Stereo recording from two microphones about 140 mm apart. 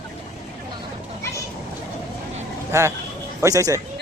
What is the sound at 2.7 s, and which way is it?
Speech, 20° right (ahead or behind).